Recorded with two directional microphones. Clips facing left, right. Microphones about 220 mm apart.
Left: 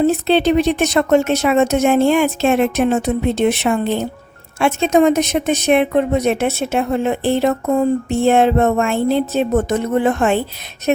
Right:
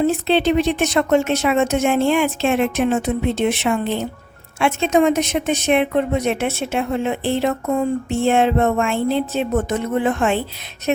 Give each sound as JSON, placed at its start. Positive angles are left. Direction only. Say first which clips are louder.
{"t": 0.0, "sound": "speech", "louder": "left 3 dB", "side_deg": 40}